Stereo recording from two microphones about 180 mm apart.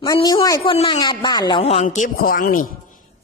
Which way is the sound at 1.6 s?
35° left (ahead or behind).